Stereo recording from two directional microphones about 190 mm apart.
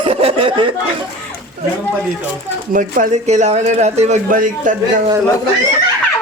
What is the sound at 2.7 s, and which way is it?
Speech, 45° right (ahead or behind).